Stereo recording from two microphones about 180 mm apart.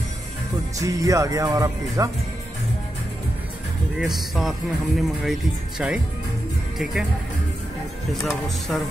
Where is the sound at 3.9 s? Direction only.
Centre (ahead or behind).